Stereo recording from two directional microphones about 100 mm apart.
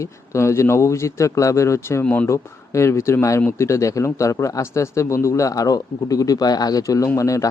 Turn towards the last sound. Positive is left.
turn(degrees=35)  # may be behind; listen again after turning